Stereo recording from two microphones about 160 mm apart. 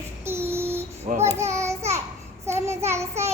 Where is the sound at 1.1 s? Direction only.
45° right (ahead or behind).